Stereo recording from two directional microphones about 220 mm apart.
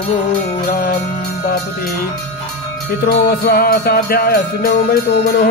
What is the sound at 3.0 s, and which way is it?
Music, 40° left (ahead or behind).